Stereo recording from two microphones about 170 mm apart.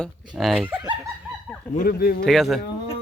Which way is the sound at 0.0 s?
Centre (ahead or behind).